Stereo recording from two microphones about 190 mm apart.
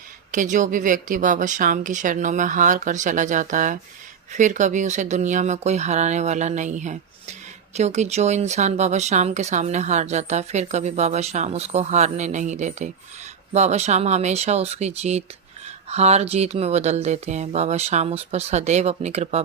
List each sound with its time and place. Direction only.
0.3 s speech: 40° right (ahead or behind)